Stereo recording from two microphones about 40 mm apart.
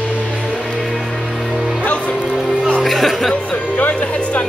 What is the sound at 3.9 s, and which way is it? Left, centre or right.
Music, left.